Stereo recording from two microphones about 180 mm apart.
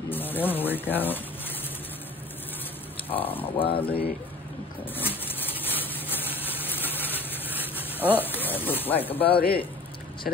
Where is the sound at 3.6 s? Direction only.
30° left (ahead or behind).